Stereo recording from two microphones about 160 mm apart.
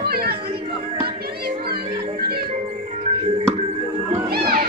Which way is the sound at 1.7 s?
75° right (ahead or behind).